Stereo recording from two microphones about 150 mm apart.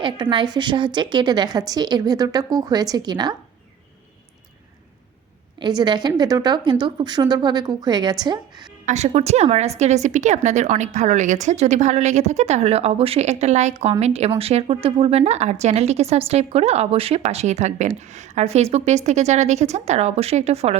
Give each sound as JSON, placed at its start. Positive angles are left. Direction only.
{"t": 0.0, "sound": "a woman's voice", "side_deg": -30}
{"t": 5.5, "sound": "a woman's voice", "side_deg": -30}
{"t": 8.9, "sound": "a woman's voice", "side_deg": -45}